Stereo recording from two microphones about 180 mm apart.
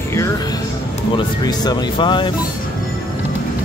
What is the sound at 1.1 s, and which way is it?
Speech, 20° left (ahead or behind).